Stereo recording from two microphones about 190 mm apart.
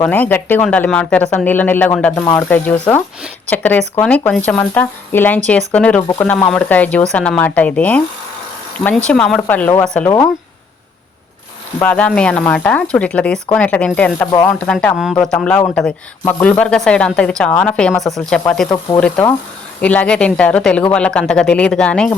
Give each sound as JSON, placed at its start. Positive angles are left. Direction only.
{"t": 0.0, "sound": "speech", "side_deg": 10}
{"t": 9.0, "sound": "speech", "side_deg": 5}
{"t": 11.8, "sound": "speech", "side_deg": 10}
{"t": 14.3, "sound": "speech", "side_deg": 20}
{"t": 14.6, "sound": "speech", "side_deg": 10}